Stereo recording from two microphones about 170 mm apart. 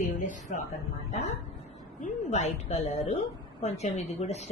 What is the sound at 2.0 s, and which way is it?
A woman's voice, 40° left (ahead or behind).